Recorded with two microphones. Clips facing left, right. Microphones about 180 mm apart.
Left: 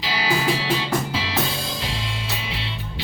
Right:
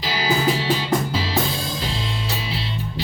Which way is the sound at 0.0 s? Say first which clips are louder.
Right 2 dB; 40° right (ahead or behind).